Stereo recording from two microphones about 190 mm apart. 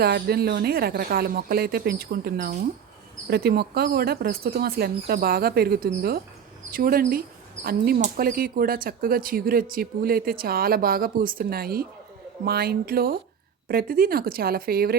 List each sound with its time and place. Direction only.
0.0 s speech: 55° right (ahead or behind)